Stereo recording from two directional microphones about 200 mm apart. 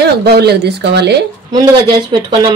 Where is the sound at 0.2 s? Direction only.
55° right (ahead or behind).